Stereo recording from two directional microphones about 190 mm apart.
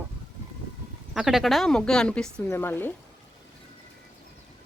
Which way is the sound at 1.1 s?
5° right (ahead or behind).